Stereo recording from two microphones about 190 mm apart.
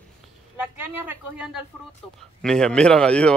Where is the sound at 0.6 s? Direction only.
10° right (ahead or behind).